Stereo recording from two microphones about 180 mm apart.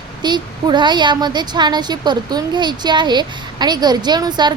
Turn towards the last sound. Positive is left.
turn(degrees=-25)  # may be behind; listen again after turning